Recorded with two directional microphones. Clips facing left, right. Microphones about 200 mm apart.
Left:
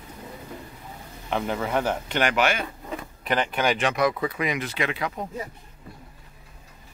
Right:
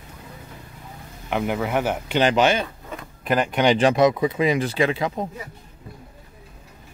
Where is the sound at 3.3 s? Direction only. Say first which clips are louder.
Right 4 dB; 5° right (ahead or behind).